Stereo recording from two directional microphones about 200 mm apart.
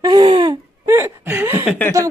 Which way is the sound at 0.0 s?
20° right (ahead or behind).